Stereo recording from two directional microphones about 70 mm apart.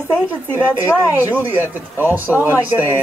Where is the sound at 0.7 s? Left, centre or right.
Left.